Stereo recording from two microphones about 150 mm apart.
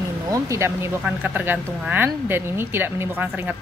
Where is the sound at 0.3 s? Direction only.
20° right (ahead or behind).